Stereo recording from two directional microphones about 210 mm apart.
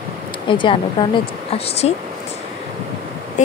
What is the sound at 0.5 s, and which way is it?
Speech, 25° left (ahead or behind).